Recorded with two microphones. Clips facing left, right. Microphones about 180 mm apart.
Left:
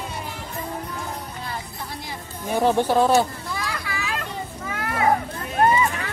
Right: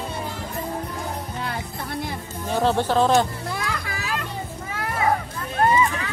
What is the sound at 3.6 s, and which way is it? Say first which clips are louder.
Children playing: even; 50° right (ahead or behind).